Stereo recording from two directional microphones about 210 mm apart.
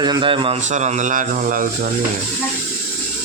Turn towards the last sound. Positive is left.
turn(degrees=-40)  # may be behind; listen again after turning